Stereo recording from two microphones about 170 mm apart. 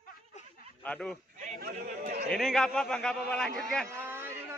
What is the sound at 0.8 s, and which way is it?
Speech, 5° left (ahead or behind).